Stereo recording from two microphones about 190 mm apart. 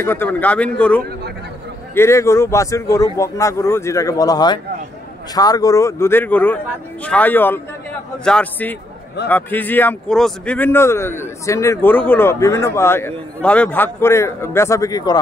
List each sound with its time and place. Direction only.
0.0 s speech: 10° left (ahead or behind)